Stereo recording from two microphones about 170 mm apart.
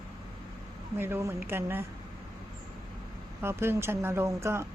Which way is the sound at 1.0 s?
15° right (ahead or behind).